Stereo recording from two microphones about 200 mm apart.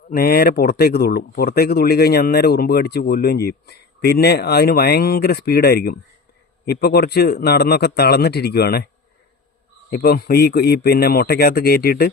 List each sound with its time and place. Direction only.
0.1 s speech: 50° left (ahead or behind)
9.9 s speech: 50° left (ahead or behind)